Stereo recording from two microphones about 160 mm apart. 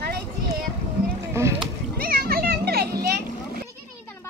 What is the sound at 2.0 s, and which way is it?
Children playing, 70° right (ahead or behind).